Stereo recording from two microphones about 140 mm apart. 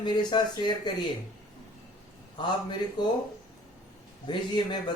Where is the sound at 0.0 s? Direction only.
35° left (ahead or behind).